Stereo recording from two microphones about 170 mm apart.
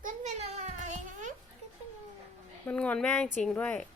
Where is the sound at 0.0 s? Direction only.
45° right (ahead or behind).